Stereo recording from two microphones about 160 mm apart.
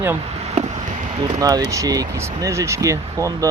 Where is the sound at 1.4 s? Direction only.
25° right (ahead or behind).